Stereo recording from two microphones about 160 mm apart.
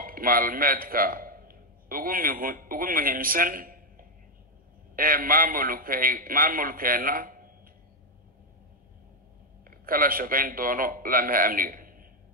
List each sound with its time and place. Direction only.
0.0 s a man's voice: 65° right (ahead or behind)
9.7 s a man's voice: 65° right (ahead or behind)